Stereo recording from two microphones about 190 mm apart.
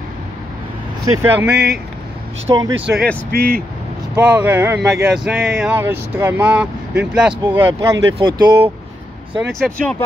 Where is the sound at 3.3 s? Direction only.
55° right (ahead or behind).